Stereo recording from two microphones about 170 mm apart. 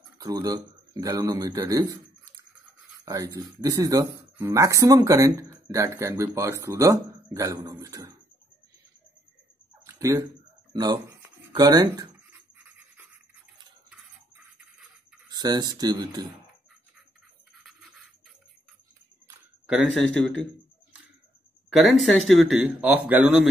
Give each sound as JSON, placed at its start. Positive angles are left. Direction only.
{"t": 0.2, "sound": "speech", "side_deg": -20}
{"t": 3.1, "sound": "speech", "side_deg": -20}
{"t": 9.8, "sound": "a sound", "side_deg": -20}
{"t": 10.7, "sound": "speech", "side_deg": -25}
{"t": 15.2, "sound": "speech", "side_deg": -25}
{"t": 19.6, "sound": "speech", "side_deg": -5}
{"t": 21.7, "sound": "speech", "side_deg": 0}